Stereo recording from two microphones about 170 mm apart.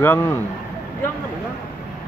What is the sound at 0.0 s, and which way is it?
Speech, 15° left (ahead or behind).